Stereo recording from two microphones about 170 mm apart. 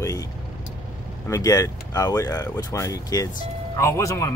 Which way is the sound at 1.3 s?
20° left (ahead or behind).